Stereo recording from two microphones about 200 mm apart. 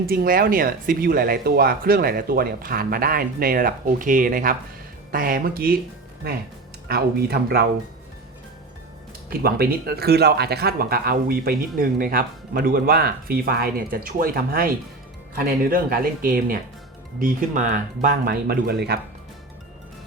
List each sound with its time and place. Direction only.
0.0 s speech: 50° right (ahead or behind)
6.8 s speech: 50° right (ahead or behind)
9.4 s speech: 50° right (ahead or behind)
15.7 s speech: 45° right (ahead or behind)